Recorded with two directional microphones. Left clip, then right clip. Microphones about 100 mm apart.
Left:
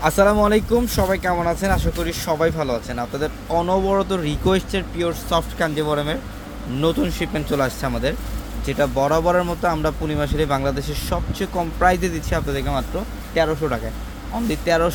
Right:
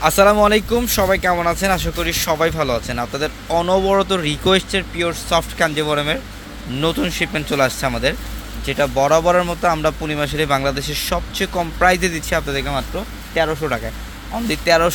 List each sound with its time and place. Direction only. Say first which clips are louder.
0.0 s speech: right 4 dB; 15° right (ahead or behind)
8.6 s speech: right 3 dB; 10° right (ahead or behind)
12.5 s speech: right 2 dB; 5° right (ahead or behind)
14.4 s speech: right 4 dB; 15° right (ahead or behind)